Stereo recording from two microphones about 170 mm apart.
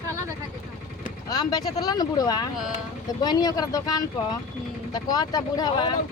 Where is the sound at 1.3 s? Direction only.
25° left (ahead or behind).